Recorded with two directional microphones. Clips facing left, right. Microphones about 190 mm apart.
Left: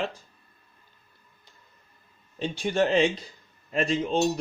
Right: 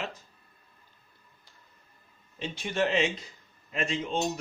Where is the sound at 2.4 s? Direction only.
35° left (ahead or behind).